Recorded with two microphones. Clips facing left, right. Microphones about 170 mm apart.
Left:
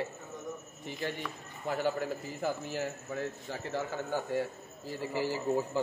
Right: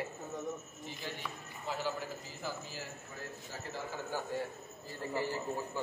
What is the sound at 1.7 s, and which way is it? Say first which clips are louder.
A man's voice: left 6 dB; 50° left (ahead or behind).